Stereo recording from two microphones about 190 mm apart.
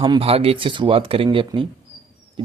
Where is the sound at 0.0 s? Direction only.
25° right (ahead or behind).